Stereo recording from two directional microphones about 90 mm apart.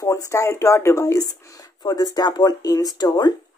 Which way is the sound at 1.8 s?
45° left (ahead or behind).